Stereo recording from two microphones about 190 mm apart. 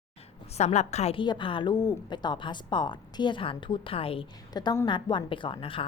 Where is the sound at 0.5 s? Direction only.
35° left (ahead or behind).